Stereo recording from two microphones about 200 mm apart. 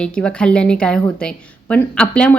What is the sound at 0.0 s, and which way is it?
A woman's voice, 5° left (ahead or behind).